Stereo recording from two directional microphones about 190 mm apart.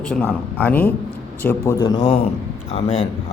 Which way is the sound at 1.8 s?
25° left (ahead or behind).